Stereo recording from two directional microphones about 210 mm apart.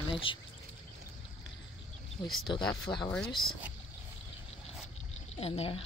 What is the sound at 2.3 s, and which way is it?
Speech, centre (ahead or behind).